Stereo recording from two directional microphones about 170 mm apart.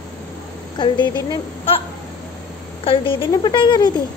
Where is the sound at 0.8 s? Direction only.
25° left (ahead or behind).